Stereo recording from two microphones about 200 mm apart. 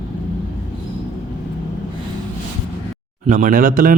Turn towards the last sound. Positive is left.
turn(degrees=-45)  # may be behind; listen again after turning